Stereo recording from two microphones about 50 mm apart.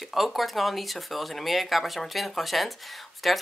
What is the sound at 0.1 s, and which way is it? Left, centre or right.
Speech, centre.